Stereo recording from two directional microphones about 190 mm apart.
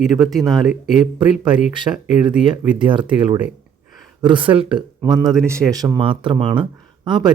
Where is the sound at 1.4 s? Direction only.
25° right (ahead or behind).